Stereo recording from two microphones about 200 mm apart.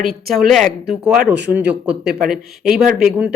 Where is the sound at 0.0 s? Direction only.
50° right (ahead or behind).